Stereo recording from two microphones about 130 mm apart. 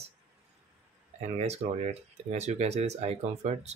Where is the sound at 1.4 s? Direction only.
55° right (ahead or behind).